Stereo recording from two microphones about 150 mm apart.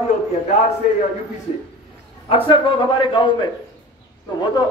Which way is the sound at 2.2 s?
35° left (ahead or behind).